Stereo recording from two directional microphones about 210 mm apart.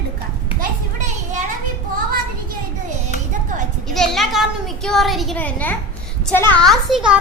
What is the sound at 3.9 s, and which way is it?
Speech, centre (ahead or behind).